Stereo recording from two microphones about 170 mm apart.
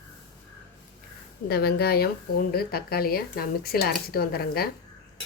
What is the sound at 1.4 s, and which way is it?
A woman's voice, 70° left (ahead or behind).